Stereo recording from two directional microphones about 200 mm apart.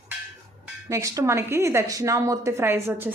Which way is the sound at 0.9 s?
15° right (ahead or behind).